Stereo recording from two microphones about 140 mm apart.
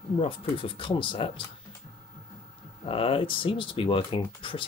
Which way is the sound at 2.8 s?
40° left (ahead or behind).